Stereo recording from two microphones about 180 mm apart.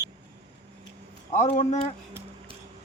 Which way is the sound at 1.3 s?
35° left (ahead or behind).